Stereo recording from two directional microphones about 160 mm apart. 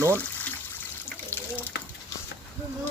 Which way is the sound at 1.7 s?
90° left.